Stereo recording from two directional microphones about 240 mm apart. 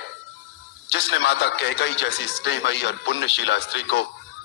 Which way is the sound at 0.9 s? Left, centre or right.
Left.